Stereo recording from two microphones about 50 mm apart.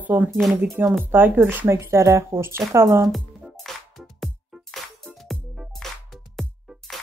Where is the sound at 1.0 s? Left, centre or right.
Right.